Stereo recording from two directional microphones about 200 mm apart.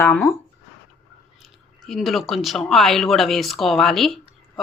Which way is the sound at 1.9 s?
Centre (ahead or behind).